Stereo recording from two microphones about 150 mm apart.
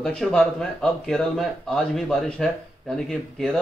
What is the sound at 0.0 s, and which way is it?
Speech, 5° left (ahead or behind).